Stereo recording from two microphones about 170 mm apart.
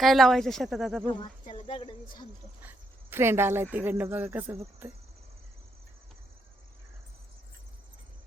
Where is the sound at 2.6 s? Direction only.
15° right (ahead or behind).